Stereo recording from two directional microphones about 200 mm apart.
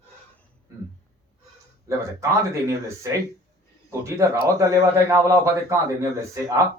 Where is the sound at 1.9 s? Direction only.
15° right (ahead or behind).